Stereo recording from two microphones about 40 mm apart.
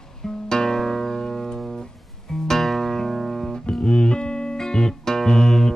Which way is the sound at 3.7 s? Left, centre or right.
Centre.